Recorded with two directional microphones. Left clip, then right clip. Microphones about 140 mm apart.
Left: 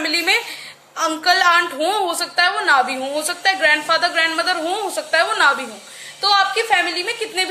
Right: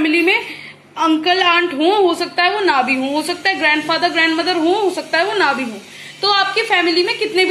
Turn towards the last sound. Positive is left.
turn(degrees=50)  # may be behind; listen again after turning